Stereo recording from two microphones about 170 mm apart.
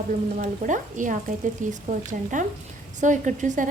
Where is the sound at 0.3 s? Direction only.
50° right (ahead or behind).